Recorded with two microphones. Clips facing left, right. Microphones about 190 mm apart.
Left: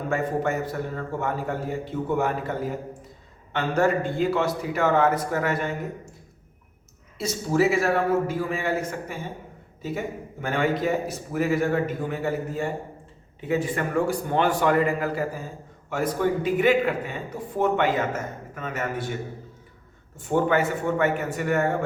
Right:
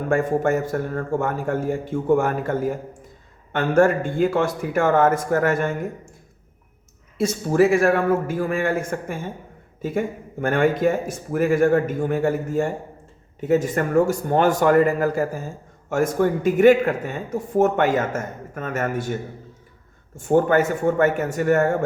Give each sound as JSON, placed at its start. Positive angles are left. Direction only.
{"t": 0.1, "sound": "speech", "side_deg": -50}
{"t": 7.2, "sound": "speech", "side_deg": -55}
{"t": 10.4, "sound": "speech", "side_deg": -50}
{"t": 20.1, "sound": "speech", "side_deg": -45}